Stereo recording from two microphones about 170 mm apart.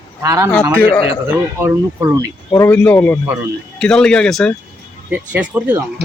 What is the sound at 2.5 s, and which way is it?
Speech, 15° left (ahead or behind).